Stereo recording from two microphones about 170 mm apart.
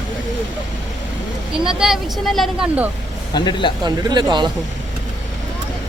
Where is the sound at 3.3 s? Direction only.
25° left (ahead or behind).